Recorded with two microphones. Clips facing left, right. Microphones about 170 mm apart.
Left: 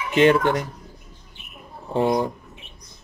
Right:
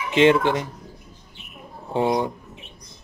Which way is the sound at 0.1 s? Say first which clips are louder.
Even; 20° right (ahead or behind).